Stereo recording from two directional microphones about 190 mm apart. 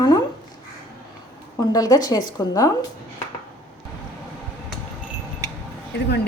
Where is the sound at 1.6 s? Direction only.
20° left (ahead or behind).